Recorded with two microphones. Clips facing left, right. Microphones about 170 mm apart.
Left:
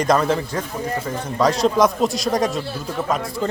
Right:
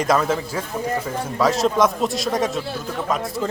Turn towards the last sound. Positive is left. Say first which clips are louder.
# left 1 dB
turn(degrees=0)  # may be behind; listen again after turning